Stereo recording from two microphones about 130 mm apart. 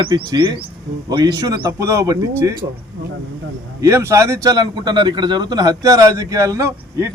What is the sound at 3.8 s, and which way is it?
A man's voice, 20° right (ahead or behind).